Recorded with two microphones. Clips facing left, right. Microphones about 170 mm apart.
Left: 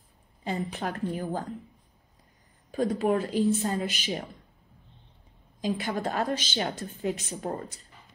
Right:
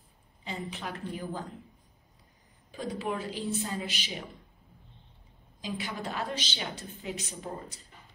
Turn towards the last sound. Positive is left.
turn(degrees=50)  # may be behind; listen again after turning